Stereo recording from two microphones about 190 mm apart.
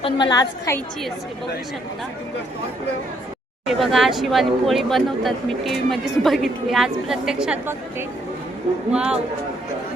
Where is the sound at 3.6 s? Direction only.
Centre (ahead or behind).